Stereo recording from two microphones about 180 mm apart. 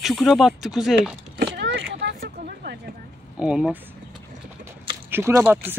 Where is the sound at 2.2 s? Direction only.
55° right (ahead or behind).